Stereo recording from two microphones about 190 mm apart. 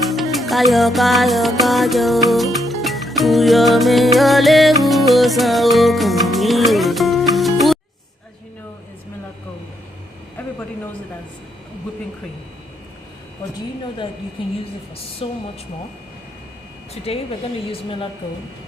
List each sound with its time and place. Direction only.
0.1 s music: centre (ahead or behind)
15.2 s a woman's voice: 30° left (ahead or behind)
16.9 s a woman's voice: 30° left (ahead or behind)